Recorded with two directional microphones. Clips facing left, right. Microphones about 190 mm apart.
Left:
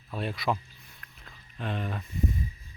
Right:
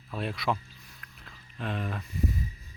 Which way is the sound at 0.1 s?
Centre (ahead or behind).